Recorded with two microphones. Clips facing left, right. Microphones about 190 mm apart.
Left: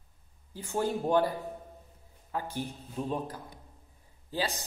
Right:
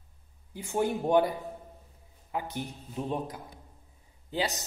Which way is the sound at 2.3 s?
15° right (ahead or behind).